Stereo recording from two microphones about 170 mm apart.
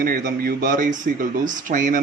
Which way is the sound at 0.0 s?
60° right (ahead or behind).